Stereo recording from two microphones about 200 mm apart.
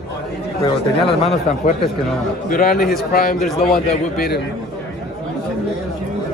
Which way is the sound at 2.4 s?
45° left (ahead or behind).